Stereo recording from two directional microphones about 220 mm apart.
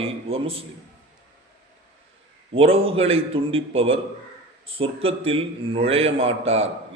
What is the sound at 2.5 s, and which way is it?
A man's voice, 25° right (ahead or behind).